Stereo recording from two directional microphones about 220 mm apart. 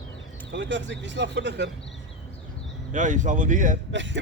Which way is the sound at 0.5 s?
55° right (ahead or behind).